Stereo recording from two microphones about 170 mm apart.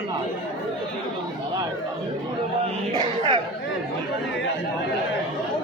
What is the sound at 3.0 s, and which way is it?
Chatter, 30° right (ahead or behind).